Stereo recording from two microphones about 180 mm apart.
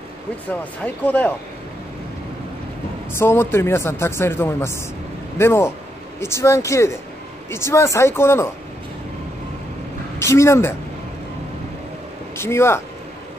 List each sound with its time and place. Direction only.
0.5 s speech: 10° left (ahead or behind)
3.1 s speech: 15° left (ahead or behind)
10.1 s speech: 15° left (ahead or behind)
12.4 s speech: 15° left (ahead or behind)